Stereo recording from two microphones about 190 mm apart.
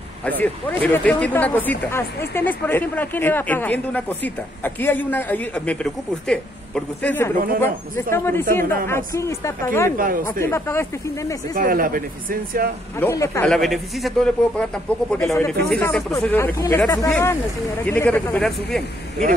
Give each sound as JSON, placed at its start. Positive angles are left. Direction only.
{"t": 0.2, "sound": "speech", "side_deg": 10}
{"t": 9.9, "sound": "speech", "side_deg": -45}
{"t": 10.4, "sound": "speech", "side_deg": 15}
{"t": 11.5, "sound": "speech", "side_deg": -45}
{"t": 13.0, "sound": "speech", "side_deg": 15}
{"t": 13.5, "sound": "a man's voice", "side_deg": 0}